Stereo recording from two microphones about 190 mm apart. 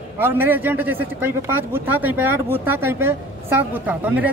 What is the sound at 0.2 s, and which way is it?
Speech, 10° right (ahead or behind).